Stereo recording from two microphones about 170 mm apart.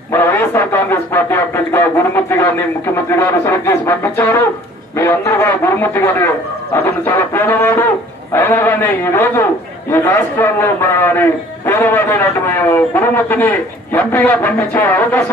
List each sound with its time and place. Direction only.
0.1 s radio: 15° left (ahead or behind)
3.1 s a man's voice: 15° left (ahead or behind)